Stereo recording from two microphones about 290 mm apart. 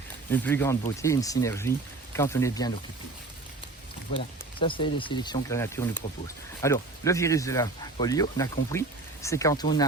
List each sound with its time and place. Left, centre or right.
0.3 s speech: centre
4.6 s speech: centre